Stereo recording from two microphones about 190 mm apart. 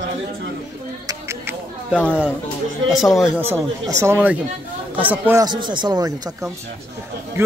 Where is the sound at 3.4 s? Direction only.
15° right (ahead or behind).